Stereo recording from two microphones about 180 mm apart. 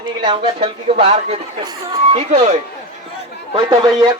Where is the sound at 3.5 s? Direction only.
30° right (ahead or behind).